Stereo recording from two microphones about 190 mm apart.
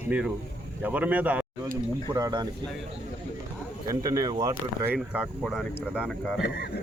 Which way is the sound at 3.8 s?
20° right (ahead or behind).